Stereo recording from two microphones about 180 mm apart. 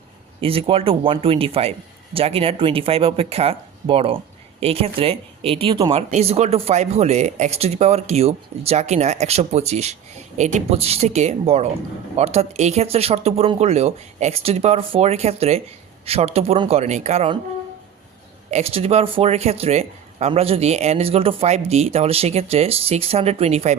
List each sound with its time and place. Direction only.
0.4 s speech: 30° right (ahead or behind)
18.5 s speech: 35° right (ahead or behind)